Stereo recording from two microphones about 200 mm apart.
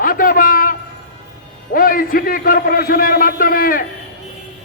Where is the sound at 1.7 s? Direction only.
45° left (ahead or behind).